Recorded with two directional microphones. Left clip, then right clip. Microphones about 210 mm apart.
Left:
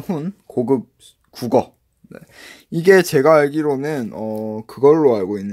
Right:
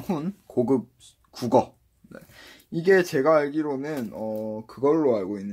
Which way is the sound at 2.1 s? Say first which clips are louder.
Left 6 dB; 35° left (ahead or behind).